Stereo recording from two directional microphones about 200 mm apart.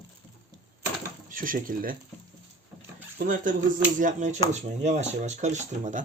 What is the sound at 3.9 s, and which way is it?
Speech, 40° right (ahead or behind).